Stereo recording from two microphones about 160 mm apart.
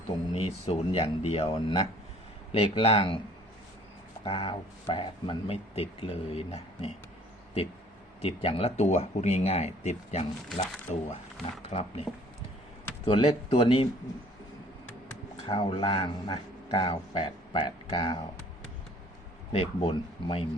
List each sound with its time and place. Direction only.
0.1 s speech: 40° left (ahead or behind)
4.2 s speech: 35° left (ahead or behind)
8.2 s speech: 40° left (ahead or behind)
13.1 s speech: 35° left (ahead or behind)
15.4 s speech: 35° left (ahead or behind)
19.5 s speech: 35° left (ahead or behind)